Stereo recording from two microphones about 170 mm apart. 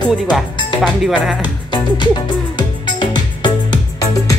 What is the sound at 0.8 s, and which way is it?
Speech, centre (ahead or behind).